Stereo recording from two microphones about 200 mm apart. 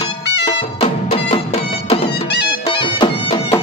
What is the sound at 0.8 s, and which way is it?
Music, 30° left (ahead or behind).